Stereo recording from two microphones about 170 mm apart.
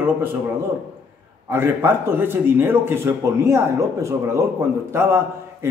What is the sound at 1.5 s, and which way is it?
A man's voice, 15° right (ahead or behind).